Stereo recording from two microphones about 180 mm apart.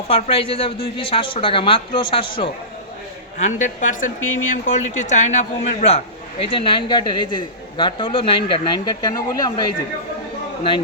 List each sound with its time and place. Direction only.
0.1 s speech: 35° left (ahead or behind)
3.3 s speech: 45° left (ahead or behind); by 9.7 s 20° left (ahead or behind)